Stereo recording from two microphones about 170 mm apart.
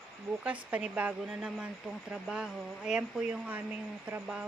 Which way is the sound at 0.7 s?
5° right (ahead or behind).